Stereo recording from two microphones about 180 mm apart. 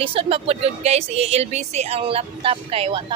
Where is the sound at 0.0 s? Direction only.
30° right (ahead or behind).